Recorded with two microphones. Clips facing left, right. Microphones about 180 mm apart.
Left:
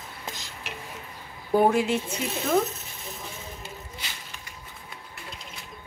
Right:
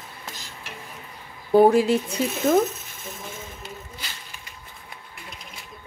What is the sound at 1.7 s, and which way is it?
Speech, 35° right (ahead or behind).